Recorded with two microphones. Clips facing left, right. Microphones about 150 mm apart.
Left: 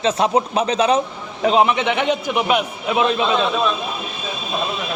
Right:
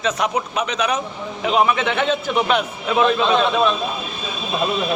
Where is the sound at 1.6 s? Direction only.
20° left (ahead or behind).